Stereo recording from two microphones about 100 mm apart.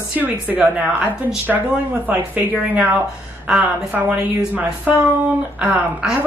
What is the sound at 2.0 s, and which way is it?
A woman's voice, 15° right (ahead or behind).